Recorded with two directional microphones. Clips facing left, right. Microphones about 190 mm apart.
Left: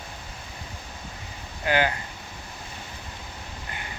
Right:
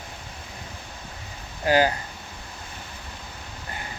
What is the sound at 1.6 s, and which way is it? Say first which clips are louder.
Speech: right 4 dB; 35° right (ahead or behind).